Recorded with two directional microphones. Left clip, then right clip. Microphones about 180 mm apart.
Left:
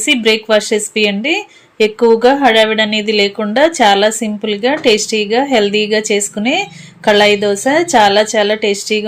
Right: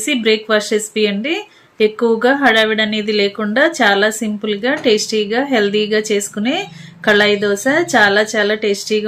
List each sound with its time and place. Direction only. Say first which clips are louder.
0.0 s speech: left 3 dB; 10° left (ahead or behind)